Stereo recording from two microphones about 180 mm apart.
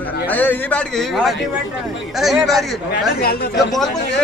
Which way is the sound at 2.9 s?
60° left (ahead or behind).